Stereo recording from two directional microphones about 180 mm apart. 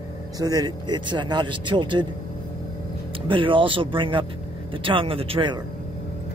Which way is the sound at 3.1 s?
30° right (ahead or behind).